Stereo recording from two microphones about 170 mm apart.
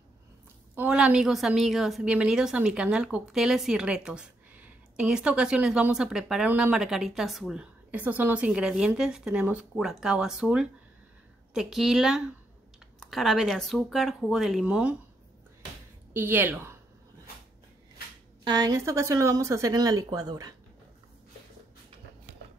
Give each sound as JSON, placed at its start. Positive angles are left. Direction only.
{"t": 0.7, "sound": "a woman's voice", "side_deg": -5}
{"t": 16.1, "sound": "a woman's voice", "side_deg": -15}
{"t": 18.4, "sound": "speech", "side_deg": -25}